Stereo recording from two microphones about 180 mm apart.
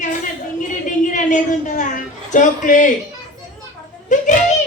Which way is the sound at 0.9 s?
45° left (ahead or behind).